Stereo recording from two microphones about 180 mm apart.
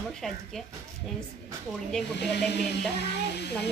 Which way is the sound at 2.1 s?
70° left (ahead or behind).